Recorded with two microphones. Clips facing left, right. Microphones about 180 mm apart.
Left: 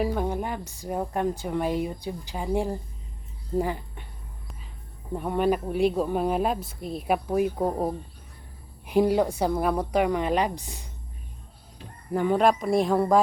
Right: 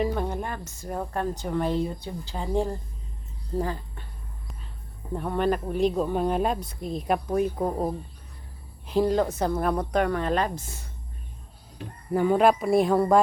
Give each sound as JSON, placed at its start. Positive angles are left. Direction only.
{"t": 0.0, "sound": "speech", "side_deg": 10}
{"t": 5.1, "sound": "speech", "side_deg": 10}
{"t": 11.8, "sound": "speech", "side_deg": -60}
{"t": 12.1, "sound": "speech", "side_deg": 0}